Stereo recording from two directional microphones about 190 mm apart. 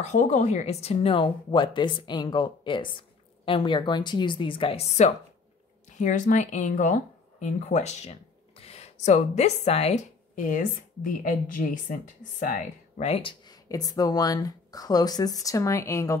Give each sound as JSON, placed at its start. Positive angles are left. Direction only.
{"t": 0.0, "sound": "speech", "side_deg": 40}